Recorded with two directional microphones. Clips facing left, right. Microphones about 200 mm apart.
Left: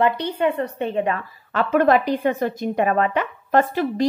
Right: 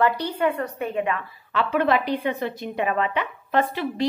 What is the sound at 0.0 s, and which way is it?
Speech, 25° left (ahead or behind).